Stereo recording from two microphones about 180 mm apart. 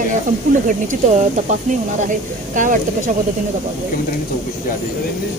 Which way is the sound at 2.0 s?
45° right (ahead or behind).